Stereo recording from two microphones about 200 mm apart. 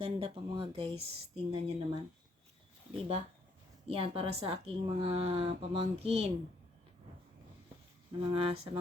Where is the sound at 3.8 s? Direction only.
30° right (ahead or behind).